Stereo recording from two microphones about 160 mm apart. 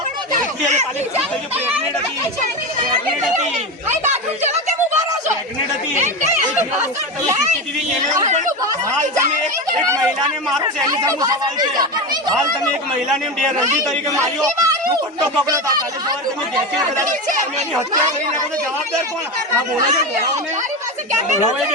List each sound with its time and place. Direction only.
8.2 s speech: 45° right (ahead or behind)
10.8 s speech: 25° right (ahead or behind)
14.6 s children playing: 20° right (ahead or behind)
15.4 s speech: 25° right (ahead or behind)